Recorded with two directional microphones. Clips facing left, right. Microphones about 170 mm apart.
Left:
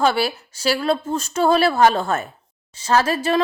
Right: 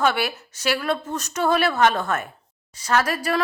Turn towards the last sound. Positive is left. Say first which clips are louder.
# left 4 dB
turn(degrees=25)  # may be behind; listen again after turning